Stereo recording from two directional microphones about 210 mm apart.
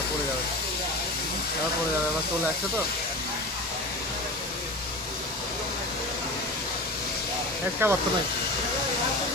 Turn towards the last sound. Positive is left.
turn(degrees=-10)  # may be behind; listen again after turning